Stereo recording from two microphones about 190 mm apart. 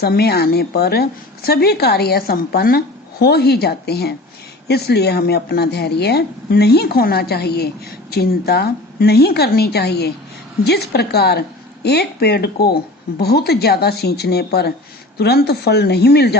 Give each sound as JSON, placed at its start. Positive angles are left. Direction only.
{"t": 0.0, "sound": "speech", "side_deg": 55}